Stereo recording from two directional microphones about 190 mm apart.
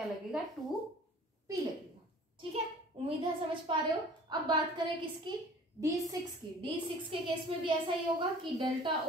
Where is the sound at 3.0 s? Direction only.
30° right (ahead or behind).